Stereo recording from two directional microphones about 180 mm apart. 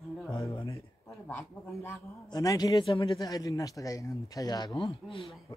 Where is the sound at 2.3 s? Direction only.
20° left (ahead or behind).